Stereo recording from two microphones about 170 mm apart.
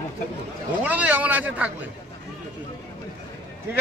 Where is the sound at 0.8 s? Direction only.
10° right (ahead or behind).